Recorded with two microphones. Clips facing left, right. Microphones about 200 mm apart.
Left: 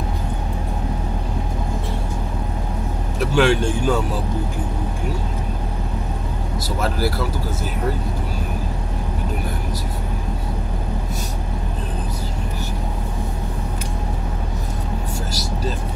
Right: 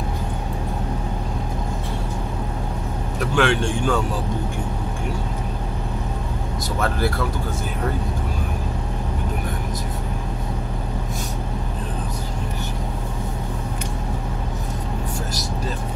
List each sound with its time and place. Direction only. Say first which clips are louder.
3.3 s speech: left 3 dB; 5° left (ahead or behind)
6.8 s speech: even; 5° left (ahead or behind)